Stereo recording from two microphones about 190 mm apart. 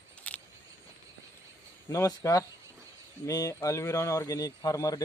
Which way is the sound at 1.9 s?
15° left (ahead or behind).